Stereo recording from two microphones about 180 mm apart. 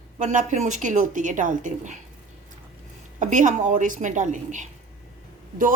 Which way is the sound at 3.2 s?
45° right (ahead or behind).